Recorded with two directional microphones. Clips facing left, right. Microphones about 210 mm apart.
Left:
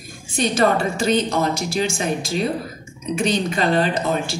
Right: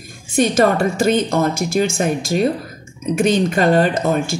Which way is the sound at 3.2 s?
50° right (ahead or behind).